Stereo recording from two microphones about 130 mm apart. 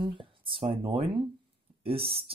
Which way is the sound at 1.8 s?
45° right (ahead or behind).